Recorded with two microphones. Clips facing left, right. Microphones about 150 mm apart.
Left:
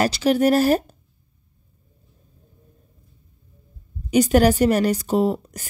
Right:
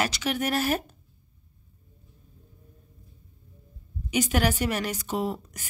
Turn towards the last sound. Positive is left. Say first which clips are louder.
# left 9 dB
turn(degrees=35)  # may be behind; listen again after turning